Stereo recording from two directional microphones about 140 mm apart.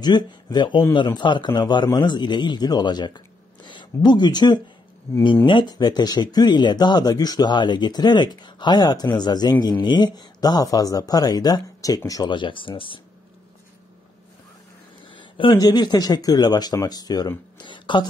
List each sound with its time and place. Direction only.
0.0 s a man's voice: 30° left (ahead or behind)
15.0 s speech: 35° left (ahead or behind)
17.6 s a sound: 35° left (ahead or behind)